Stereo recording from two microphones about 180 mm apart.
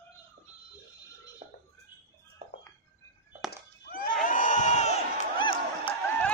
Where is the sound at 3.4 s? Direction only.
55° left (ahead or behind); by 6.0 s 30° left (ahead or behind).